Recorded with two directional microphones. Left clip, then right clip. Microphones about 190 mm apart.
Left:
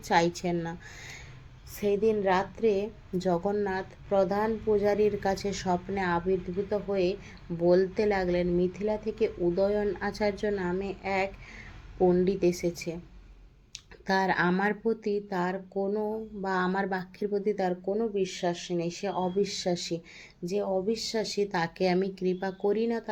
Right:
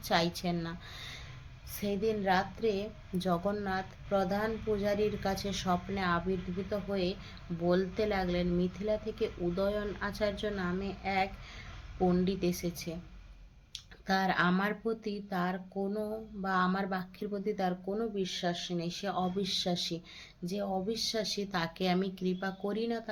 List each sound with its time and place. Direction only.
0.0 s a woman's voice: 15° left (ahead or behind)